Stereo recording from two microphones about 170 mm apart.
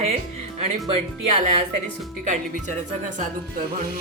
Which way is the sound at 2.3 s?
45° right (ahead or behind).